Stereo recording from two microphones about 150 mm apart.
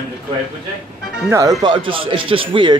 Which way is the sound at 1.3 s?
25° right (ahead or behind).